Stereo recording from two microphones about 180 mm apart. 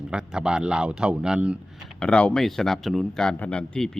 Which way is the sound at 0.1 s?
5° right (ahead or behind).